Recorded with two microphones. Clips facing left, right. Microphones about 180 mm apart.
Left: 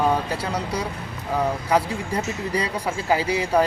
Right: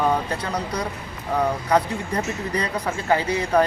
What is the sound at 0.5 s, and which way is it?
Speech, 10° left (ahead or behind).